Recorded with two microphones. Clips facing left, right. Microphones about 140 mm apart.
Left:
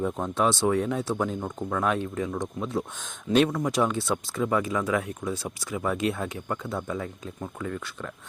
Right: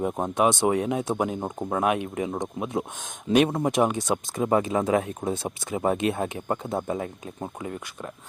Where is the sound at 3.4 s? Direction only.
25° right (ahead or behind).